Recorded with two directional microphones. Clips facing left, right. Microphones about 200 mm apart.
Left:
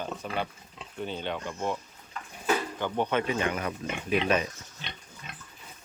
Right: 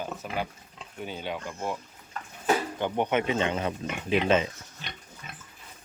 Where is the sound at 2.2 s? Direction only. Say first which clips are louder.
Right 2 dB; 45° right (ahead or behind).